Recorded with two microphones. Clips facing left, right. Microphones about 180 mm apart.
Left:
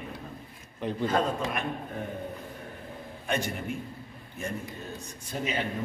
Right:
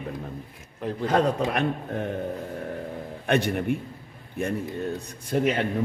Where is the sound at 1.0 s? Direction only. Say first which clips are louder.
Right 5 dB; 75° right (ahead or behind).